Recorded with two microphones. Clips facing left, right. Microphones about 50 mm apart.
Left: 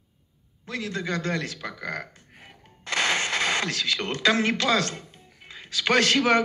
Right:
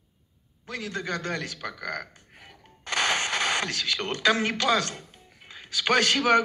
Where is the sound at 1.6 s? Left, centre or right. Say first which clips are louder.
Left 1 dB; left.